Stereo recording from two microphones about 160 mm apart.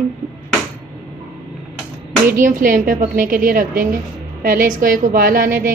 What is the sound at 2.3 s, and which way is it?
A woman's voice, 55° right (ahead or behind).